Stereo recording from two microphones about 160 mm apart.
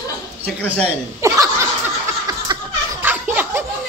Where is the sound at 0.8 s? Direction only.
15° right (ahead or behind).